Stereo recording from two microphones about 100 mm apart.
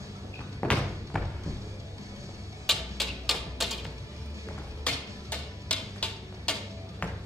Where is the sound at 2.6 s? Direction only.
5° left (ahead or behind).